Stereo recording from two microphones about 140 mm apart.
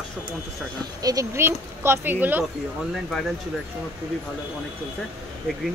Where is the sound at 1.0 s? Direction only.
20° right (ahead or behind).